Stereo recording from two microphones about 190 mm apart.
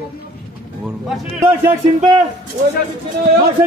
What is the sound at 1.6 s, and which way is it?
Speech, 20° right (ahead or behind).